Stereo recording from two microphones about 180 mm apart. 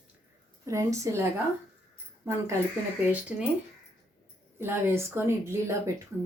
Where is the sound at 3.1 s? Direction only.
10° right (ahead or behind).